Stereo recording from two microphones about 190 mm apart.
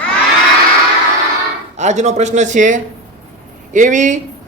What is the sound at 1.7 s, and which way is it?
A woman's voice, 40° right (ahead or behind).